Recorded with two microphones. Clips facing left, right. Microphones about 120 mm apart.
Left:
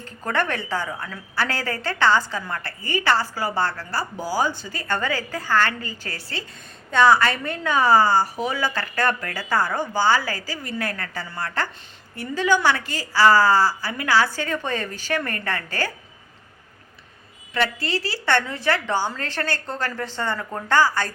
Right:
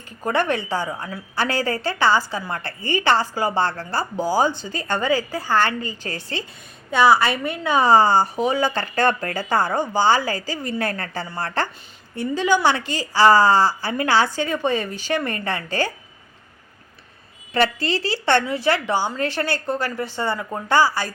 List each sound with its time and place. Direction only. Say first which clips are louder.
0.0 s a woman's voice: right 3 dB; 15° right (ahead or behind)
2.5 s a woman's voice: right 3 dB; 25° right (ahead or behind)
6.9 s a woman's voice: right 1 dB; 10° right (ahead or behind)
17.5 s a woman's voice: right 4 dB; 30° right (ahead or behind); by 21.1 s 10° right (ahead or behind)